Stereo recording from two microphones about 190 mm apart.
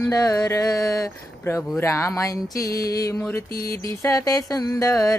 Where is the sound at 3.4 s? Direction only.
50° left (ahead or behind).